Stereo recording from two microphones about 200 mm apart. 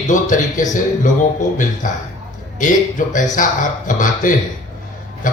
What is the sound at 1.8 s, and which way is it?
Speech, 40° left (ahead or behind).